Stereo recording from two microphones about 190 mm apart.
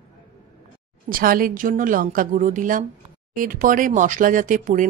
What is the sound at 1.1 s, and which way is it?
Speech, 50° right (ahead or behind).